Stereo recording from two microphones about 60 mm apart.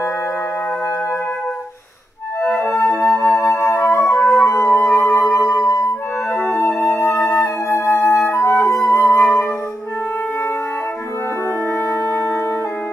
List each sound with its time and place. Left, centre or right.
2.6 s music: left
4.2 s music: left
5.3 s music: left
6.8 s music: left
7.4 s music: left
11.9 s music: left